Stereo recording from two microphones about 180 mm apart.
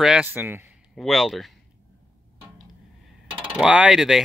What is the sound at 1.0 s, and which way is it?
Speech, centre (ahead or behind).